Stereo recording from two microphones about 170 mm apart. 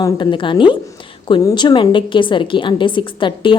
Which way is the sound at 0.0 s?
30° left (ahead or behind).